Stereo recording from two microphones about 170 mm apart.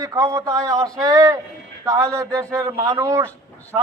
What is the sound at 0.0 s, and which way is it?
A man's voice, 20° right (ahead or behind).